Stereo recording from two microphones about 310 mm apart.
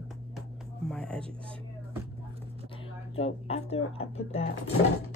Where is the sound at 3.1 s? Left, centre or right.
Centre.